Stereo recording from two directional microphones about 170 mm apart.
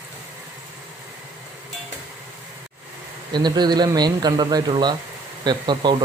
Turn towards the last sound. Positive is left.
turn(degrees=-25)  # may be behind; listen again after turning